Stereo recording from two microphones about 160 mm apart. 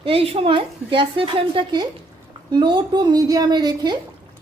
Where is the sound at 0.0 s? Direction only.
35° right (ahead or behind).